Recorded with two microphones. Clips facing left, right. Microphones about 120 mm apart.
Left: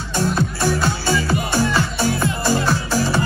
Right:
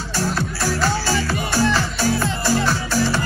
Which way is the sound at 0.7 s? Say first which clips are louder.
Even; 20° left (ahead or behind).